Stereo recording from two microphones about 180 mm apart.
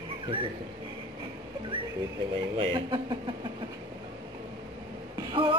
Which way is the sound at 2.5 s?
25° right (ahead or behind).